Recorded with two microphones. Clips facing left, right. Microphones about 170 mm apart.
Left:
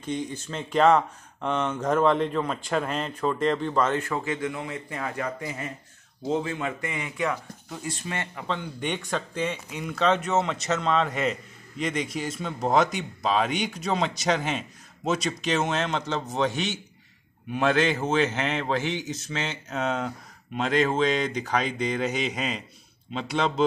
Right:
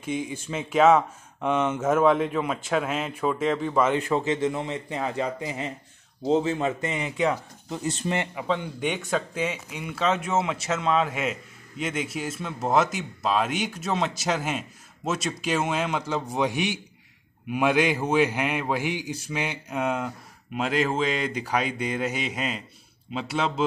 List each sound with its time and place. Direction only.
0.0 s speech: 10° right (ahead or behind)
8.4 s a man's voice: 5° right (ahead or behind)